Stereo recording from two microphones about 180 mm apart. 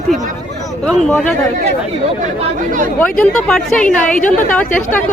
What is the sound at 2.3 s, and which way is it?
Speech, 45° right (ahead or behind).